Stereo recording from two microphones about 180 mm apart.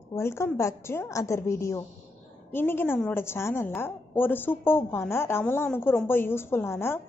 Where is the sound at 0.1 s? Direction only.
15° left (ahead or behind).